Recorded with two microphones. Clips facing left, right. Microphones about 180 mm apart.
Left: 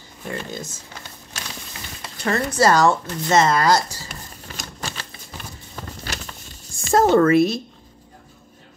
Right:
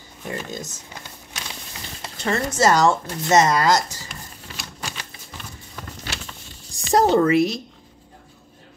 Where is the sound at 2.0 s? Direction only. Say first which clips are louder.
Left 1 dB; 25° right (ahead or behind).